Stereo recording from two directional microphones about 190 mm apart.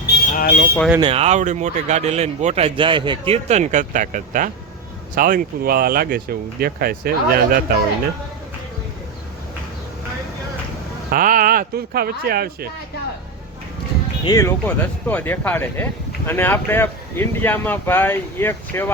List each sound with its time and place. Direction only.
0.3 s speech: 50° left (ahead or behind)
0.9 s speech: 30° right (ahead or behind); by 7.6 s 50° right (ahead or behind)
11.1 s speech: 45° right (ahead or behind)
14.3 s speech: 15° left (ahead or behind)